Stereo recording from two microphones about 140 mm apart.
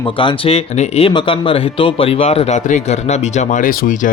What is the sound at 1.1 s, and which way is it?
A man's voice, 35° left (ahead or behind).